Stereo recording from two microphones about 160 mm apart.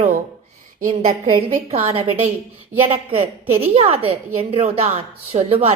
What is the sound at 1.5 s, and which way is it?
Speech, 40° right (ahead or behind).